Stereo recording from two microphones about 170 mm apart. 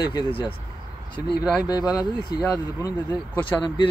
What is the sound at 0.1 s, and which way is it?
Speech, 30° left (ahead or behind).